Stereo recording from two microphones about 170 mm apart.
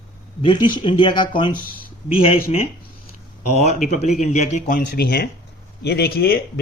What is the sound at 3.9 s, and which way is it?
Speech, 40° left (ahead or behind).